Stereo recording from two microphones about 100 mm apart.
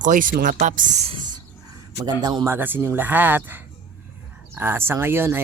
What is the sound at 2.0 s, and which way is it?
Speech, 40° right (ahead or behind).